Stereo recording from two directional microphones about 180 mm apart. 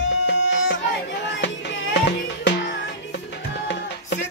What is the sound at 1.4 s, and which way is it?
Music, 75° left (ahead or behind).